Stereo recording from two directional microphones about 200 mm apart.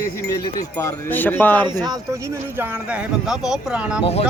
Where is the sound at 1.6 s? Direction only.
20° right (ahead or behind).